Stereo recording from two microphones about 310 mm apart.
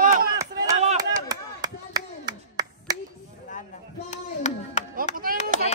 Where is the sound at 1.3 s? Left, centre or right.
Centre.